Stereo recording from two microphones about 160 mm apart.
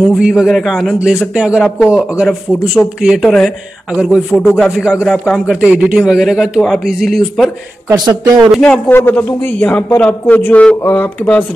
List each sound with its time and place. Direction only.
0.1 s a man's voice: 5° right (ahead or behind)
5.6 s a man's voice: 5° right (ahead or behind)
7.9 s speech: 25° right (ahead or behind)
8.5 s a man's voice: 5° left (ahead or behind)